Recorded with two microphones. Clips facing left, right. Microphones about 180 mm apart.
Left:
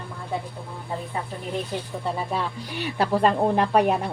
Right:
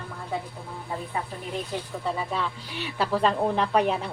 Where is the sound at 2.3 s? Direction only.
50° left (ahead or behind).